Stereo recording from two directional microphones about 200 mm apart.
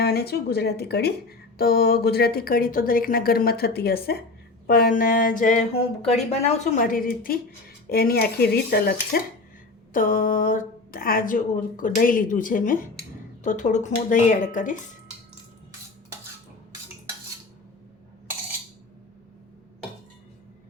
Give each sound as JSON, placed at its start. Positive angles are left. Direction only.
{"t": 0.0, "sound": "a woman's voice", "side_deg": 50}